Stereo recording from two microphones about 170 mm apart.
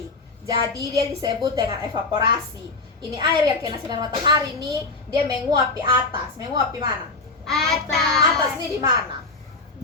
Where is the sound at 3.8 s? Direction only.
25° right (ahead or behind).